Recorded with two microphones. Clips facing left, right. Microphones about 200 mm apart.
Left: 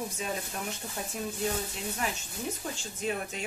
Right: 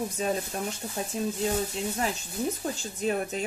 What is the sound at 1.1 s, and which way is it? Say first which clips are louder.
Speech: right 6 dB; 25° right (ahead or behind).